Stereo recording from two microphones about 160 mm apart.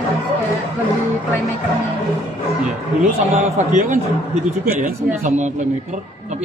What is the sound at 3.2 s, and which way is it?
A man's voice, 50° right (ahead or behind).